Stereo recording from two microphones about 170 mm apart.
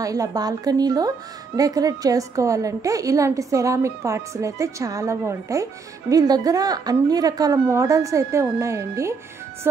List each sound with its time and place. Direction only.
0.0 s a woman's voice: 20° right (ahead or behind)